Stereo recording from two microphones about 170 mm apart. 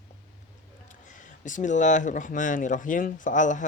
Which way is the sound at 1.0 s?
50° left (ahead or behind).